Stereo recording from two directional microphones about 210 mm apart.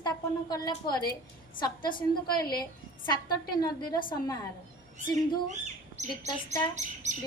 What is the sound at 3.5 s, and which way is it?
Speech, 20° left (ahead or behind).